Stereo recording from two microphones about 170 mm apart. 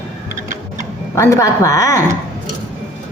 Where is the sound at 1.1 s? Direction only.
15° left (ahead or behind).